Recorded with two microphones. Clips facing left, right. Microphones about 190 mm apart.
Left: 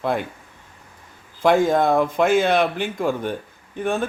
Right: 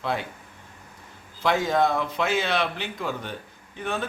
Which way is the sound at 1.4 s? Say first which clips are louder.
Left 6 dB; 50° left (ahead or behind).